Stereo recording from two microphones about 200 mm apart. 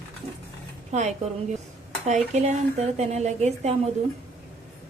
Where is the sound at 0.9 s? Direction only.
35° right (ahead or behind).